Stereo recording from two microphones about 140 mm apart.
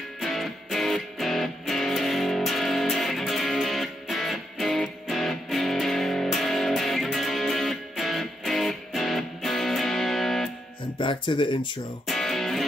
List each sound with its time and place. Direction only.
0.2 s music: centre (ahead or behind)
11.0 s speech: 35° left (ahead or behind)
12.1 s music: centre (ahead or behind)